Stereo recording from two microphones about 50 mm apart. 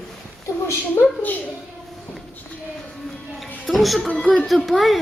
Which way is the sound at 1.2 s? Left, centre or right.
Left.